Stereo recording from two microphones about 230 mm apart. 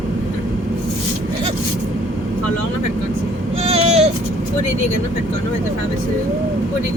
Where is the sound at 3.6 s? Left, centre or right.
Right.